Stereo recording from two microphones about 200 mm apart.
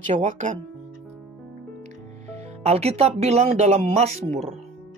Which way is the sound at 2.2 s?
30° right (ahead or behind).